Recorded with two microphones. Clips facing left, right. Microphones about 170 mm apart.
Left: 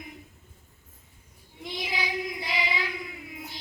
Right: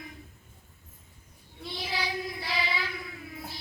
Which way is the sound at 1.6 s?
20° left (ahead or behind).